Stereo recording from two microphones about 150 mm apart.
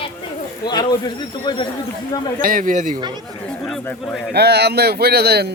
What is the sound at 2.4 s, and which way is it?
Speech, 65° right (ahead or behind).